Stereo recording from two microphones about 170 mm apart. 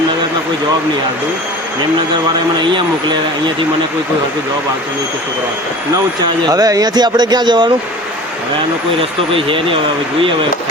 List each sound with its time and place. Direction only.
2.6 s speech: 25° right (ahead or behind)
6.5 s speech: 20° right (ahead or behind)
9.0 s speech: 30° right (ahead or behind)